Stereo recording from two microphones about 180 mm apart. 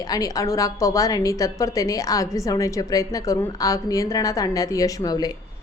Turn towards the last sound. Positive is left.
turn(degrees=20)  # may be behind; listen again after turning